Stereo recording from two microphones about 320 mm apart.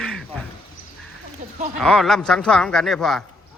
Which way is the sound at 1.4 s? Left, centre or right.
Right.